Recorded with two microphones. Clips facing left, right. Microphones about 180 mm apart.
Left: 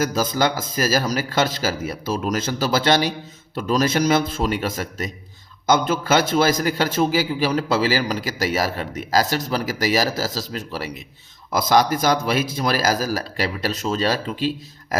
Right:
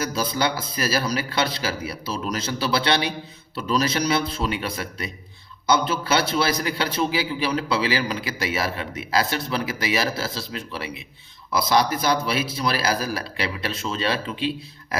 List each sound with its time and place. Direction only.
0.0 s a man's voice: 45° left (ahead or behind)